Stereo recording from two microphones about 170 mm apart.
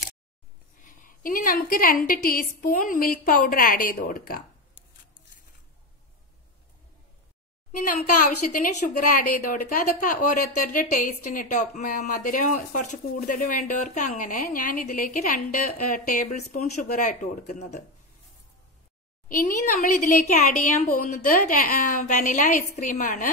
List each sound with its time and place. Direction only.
0.7 s a woman's voice: 55° left (ahead or behind)
8.5 s a woman's voice: 50° left (ahead or behind)
19.2 s a woman's voice: 55° left (ahead or behind)